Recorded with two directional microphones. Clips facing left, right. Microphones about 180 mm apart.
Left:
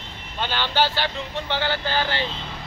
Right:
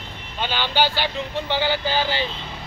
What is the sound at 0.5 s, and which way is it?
Speech, 10° right (ahead or behind).